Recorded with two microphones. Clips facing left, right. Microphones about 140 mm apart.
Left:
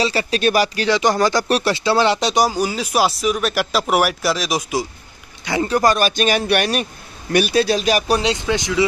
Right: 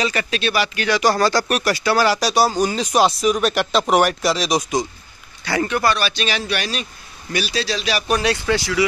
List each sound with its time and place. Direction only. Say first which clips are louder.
0.0 s speech: left 3 dB; 30° left (ahead or behind)
0.4 s a man's voice: left 5 dB; 45° left (ahead or behind)
0.8 s speech: right 3 dB; 20° left (ahead or behind)
2.4 s speech: right 1 dB; 10° left (ahead or behind)
5.4 s a man's voice: left 1 dB; 20° left (ahead or behind)
5.7 s a man's voice: left 7 dB; 40° left (ahead or behind)
8.1 s speech: left 1 dB; 20° left (ahead or behind)